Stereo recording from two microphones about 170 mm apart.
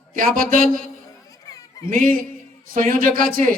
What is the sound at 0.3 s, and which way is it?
Speech, 55° right (ahead or behind).